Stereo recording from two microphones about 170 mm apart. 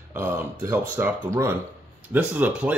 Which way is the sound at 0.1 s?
10° right (ahead or behind).